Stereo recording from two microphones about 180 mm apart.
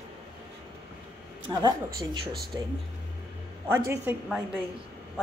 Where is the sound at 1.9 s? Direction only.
60° right (ahead or behind).